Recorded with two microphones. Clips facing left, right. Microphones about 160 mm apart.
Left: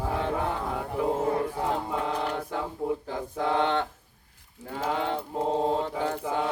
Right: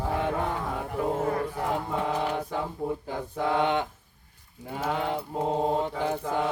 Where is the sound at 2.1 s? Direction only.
10° right (ahead or behind).